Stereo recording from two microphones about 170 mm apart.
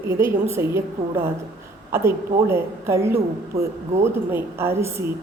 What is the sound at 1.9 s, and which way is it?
A woman's voice, 15° right (ahead or behind).